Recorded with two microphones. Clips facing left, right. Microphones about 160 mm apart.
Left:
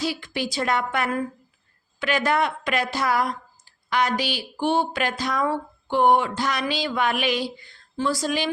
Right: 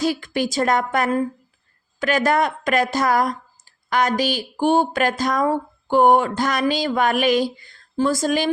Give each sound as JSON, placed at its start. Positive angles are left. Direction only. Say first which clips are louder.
{"t": 0.0, "sound": "speech", "louder": "right 6 dB", "side_deg": -45}